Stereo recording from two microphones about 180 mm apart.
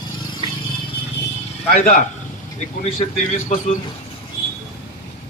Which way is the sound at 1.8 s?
40° left (ahead or behind).